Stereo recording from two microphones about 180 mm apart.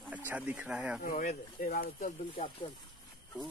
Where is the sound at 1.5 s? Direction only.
55° left (ahead or behind).